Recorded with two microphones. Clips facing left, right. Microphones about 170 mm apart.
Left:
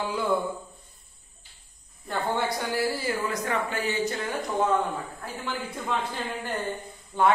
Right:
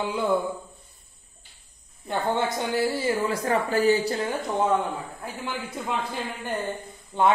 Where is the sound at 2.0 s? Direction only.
20° right (ahead or behind).